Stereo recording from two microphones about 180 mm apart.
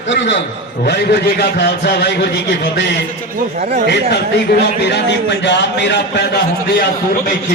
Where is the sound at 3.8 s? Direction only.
70° left (ahead or behind).